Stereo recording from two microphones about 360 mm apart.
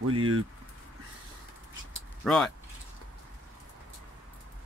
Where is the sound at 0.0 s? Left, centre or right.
Right.